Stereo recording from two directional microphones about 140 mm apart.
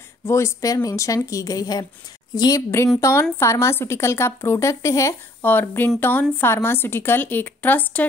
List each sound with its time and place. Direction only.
0.2 s a woman's voice: 20° left (ahead or behind)